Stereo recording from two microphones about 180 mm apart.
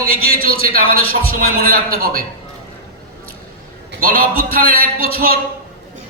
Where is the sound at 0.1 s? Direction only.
55° right (ahead or behind).